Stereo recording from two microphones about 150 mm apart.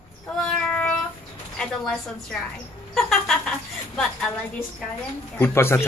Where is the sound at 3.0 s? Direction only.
Centre (ahead or behind).